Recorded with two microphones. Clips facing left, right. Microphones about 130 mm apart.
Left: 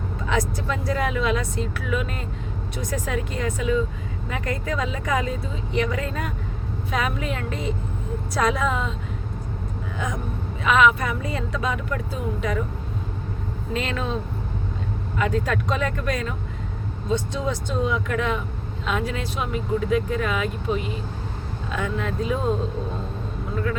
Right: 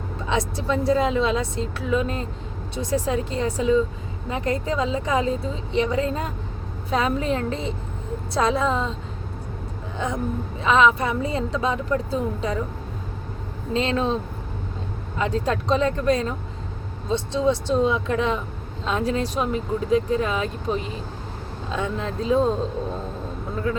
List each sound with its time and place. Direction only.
0.3 s a woman's voice: 25° right (ahead or behind)
10.0 s a woman's voice: 30° right (ahead or behind)
13.7 s a woman's voice: 25° right (ahead or behind)
15.2 s a woman's voice: 30° right (ahead or behind)